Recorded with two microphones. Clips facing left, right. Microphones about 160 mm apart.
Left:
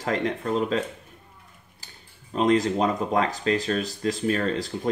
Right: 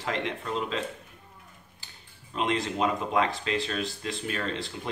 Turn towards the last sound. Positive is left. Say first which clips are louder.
# left 7 dB
turn(degrees=40)  # may be behind; listen again after turning